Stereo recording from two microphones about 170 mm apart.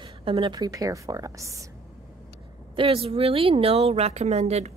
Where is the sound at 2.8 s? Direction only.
30° right (ahead or behind).